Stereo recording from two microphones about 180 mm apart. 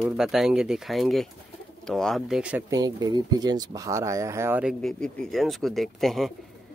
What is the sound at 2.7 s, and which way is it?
Speech, 20° right (ahead or behind).